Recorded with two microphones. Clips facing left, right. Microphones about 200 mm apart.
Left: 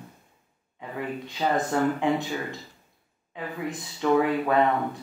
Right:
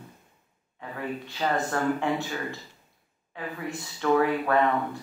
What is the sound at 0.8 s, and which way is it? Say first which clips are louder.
Speech: left 1 dB; 15° left (ahead or behind).